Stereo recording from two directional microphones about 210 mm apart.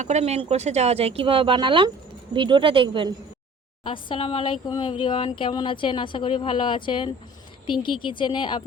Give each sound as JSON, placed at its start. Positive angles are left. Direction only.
{"t": 0.0, "sound": "speech", "side_deg": -30}
{"t": 3.8, "sound": "speech", "side_deg": 25}